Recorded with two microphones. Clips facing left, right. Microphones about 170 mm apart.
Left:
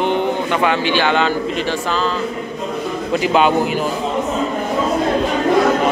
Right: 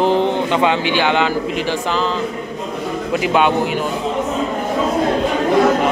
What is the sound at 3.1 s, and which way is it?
Speech, centre (ahead or behind).